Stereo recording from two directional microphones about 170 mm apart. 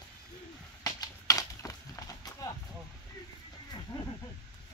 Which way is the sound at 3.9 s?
30° left (ahead or behind).